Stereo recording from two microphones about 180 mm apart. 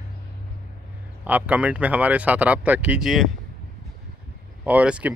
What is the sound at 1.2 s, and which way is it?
Speech, 10° right (ahead or behind).